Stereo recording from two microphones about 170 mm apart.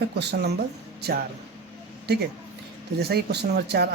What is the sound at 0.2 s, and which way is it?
Speech, 75° right (ahead or behind).